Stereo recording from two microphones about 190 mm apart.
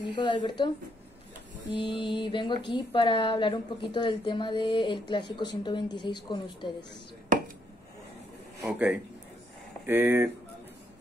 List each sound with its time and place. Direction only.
0.0 s speech: 25° left (ahead or behind)
1.7 s speech: 25° left (ahead or behind)
8.5 s speech: 10° right (ahead or behind)